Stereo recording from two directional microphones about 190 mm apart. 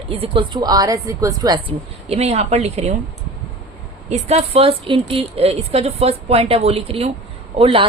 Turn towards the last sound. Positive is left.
turn(degrees=-30)  # may be behind; listen again after turning